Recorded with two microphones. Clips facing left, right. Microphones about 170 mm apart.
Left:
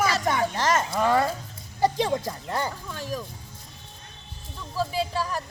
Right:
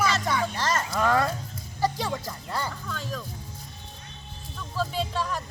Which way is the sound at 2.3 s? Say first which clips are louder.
Left 3 dB; 20° left (ahead or behind).